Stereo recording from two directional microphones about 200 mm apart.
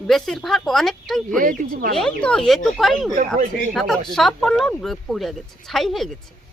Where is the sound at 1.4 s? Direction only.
45° right (ahead or behind).